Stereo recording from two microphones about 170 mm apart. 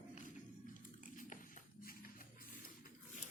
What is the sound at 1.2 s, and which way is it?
Music, 50° left (ahead or behind).